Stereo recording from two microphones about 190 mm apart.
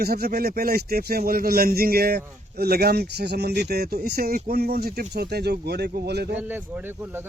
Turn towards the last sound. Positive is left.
turn(degrees=-10)  # may be behind; listen again after turning